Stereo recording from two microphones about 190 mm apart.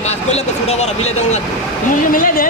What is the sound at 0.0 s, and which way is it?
Speech, 35° left (ahead or behind).